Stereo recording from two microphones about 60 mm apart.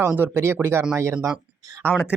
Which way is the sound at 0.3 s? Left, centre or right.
Right.